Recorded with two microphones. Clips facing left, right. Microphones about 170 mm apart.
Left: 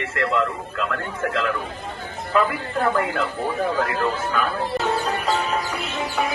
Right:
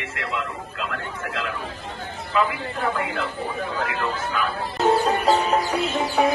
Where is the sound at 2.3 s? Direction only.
50° left (ahead or behind).